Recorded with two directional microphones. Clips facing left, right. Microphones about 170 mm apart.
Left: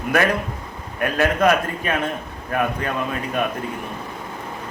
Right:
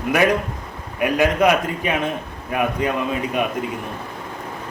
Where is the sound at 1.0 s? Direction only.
15° right (ahead or behind).